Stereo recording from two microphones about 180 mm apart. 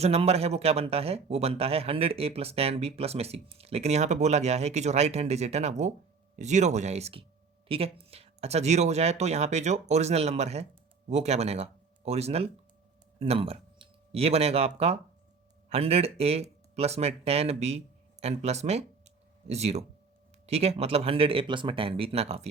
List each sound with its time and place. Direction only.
0.0 s speech: 35° right (ahead or behind)
15.7 s speech: 35° right (ahead or behind)